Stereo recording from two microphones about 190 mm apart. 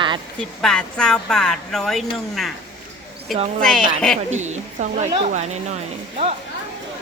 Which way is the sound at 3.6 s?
5° left (ahead or behind).